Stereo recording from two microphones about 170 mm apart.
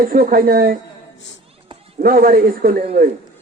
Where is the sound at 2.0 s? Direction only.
55° right (ahead or behind).